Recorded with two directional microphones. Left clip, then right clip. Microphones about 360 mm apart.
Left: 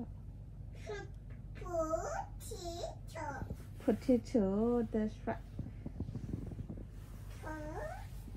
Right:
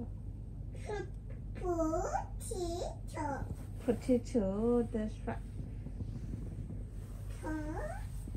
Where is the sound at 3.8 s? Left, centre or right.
Left.